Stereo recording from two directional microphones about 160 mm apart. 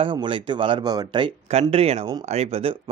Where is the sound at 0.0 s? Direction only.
30° right (ahead or behind).